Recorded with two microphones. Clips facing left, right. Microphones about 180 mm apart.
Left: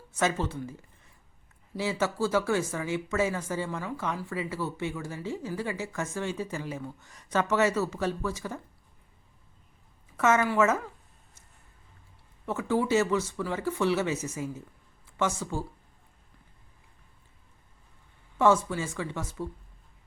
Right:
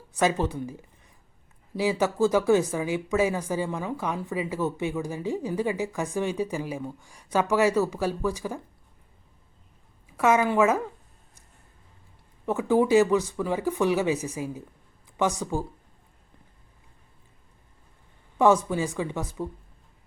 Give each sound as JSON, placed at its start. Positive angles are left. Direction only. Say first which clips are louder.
{"t": 0.1, "sound": "speech", "louder": "right 4 dB", "side_deg": -15}
{"t": 10.2, "sound": "speech", "louder": "right 3 dB", "side_deg": -15}
{"t": 12.5, "sound": "speech", "louder": "right 5 dB", "side_deg": -15}
{"t": 18.3, "sound": "speech", "louder": "right 3 dB", "side_deg": -15}